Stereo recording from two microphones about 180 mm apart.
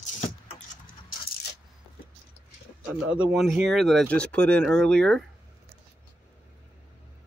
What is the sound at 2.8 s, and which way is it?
Speech, 5° right (ahead or behind).